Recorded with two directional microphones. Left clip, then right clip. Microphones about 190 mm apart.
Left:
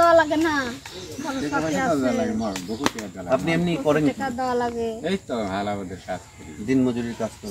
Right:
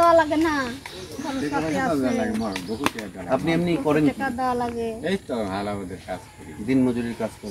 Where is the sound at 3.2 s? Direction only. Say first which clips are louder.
Even; 5° left (ahead or behind).